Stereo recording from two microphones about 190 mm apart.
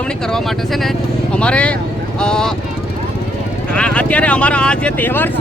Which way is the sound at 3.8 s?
5° left (ahead or behind).